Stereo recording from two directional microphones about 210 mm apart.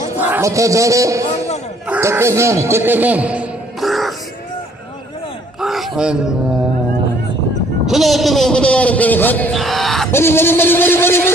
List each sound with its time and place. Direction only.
0.2 s a man's voice: 10° right (ahead or behind)
5.5 s gasp: centre (ahead or behind)
7.9 s a man's voice: centre (ahead or behind)
10.1 s a sound: 10° left (ahead or behind)